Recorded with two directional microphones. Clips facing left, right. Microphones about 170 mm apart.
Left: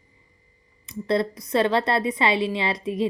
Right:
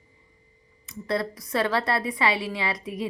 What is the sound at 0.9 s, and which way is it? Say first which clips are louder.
A woman's voice: left 5 dB; 20° left (ahead or behind).